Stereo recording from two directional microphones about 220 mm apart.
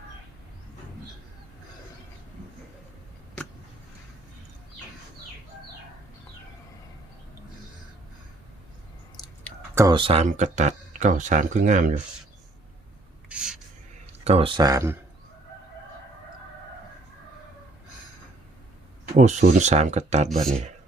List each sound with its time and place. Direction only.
9.2 s clicking: 15° left (ahead or behind)
9.7 s speech: 20° right (ahead or behind); by 11.9 s 35° right (ahead or behind)
13.2 s a sound: 5° right (ahead or behind)
14.3 s speech: 25° right (ahead or behind)
19.1 s speech: 30° right (ahead or behind)